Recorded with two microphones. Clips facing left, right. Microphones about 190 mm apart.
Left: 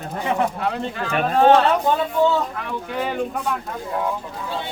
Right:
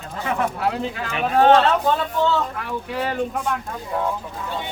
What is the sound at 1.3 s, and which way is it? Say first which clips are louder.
Speech: even; centre (ahead or behind).